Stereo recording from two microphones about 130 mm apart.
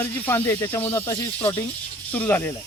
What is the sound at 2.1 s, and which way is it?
Speech, 15° left (ahead or behind).